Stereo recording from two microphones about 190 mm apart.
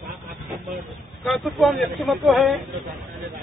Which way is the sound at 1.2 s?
Centre (ahead or behind).